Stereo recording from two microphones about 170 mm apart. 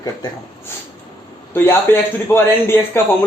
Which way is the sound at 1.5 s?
15° left (ahead or behind).